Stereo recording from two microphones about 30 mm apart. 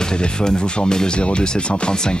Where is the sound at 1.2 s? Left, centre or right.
Left.